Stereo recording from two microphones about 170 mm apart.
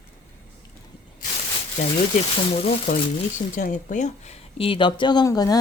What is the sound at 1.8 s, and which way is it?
Speech, 45° left (ahead or behind).